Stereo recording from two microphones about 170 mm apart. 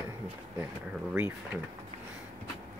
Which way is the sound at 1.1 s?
10° right (ahead or behind).